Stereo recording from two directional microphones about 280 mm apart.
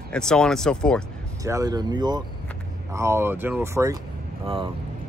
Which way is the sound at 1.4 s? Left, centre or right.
Centre.